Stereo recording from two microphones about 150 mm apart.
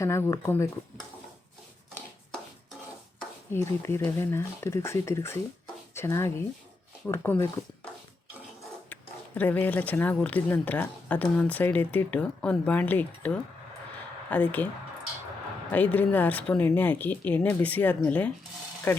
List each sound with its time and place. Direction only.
0.0 s speech: 20° left (ahead or behind)
3.5 s speech: 15° left (ahead or behind)
8.9 s speech: 10° left (ahead or behind)
15.7 s speech: 10° left (ahead or behind)